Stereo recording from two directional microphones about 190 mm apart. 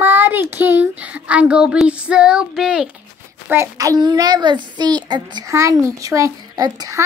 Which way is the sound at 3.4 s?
15° right (ahead or behind).